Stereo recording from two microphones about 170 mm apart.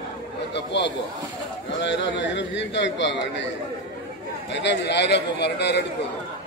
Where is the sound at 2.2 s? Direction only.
90° left.